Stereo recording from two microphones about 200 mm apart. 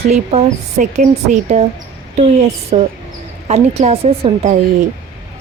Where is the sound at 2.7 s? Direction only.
35° right (ahead or behind).